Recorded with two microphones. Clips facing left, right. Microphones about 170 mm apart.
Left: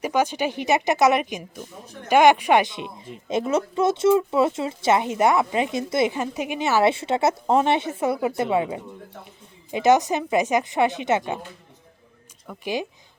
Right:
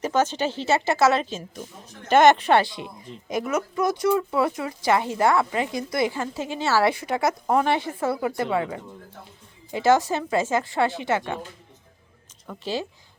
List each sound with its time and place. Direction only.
0.0 s speech: 10° left (ahead or behind)
12.5 s speech: 15° left (ahead or behind)